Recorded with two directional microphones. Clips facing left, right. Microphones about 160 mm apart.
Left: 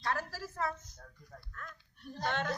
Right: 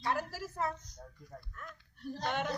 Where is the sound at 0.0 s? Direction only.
15° right (ahead or behind).